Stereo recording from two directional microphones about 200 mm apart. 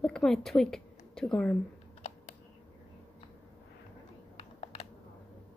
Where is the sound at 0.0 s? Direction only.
5° left (ahead or behind).